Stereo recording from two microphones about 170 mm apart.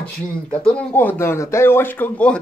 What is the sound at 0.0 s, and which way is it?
Speech, 10° left (ahead or behind).